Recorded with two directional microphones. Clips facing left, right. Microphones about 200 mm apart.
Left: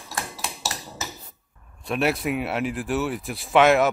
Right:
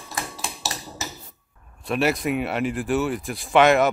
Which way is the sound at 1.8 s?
Centre (ahead or behind).